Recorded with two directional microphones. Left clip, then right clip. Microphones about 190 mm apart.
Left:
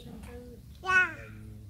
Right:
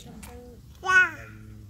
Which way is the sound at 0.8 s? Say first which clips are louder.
Right 5 dB; 40° right (ahead or behind).